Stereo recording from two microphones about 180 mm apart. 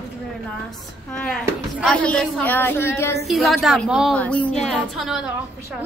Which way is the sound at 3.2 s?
Centre (ahead or behind).